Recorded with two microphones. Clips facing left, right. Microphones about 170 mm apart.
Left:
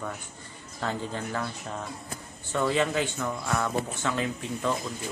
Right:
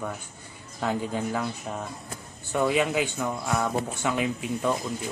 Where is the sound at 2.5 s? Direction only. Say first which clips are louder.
Right 2 dB; 10° right (ahead or behind).